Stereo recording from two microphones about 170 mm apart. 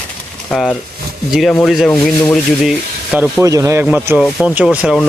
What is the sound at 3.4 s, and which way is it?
Speech, 20° right (ahead or behind).